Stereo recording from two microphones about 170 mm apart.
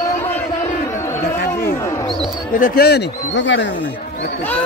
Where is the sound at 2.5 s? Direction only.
60° left (ahead or behind); by 3.7 s 90° left.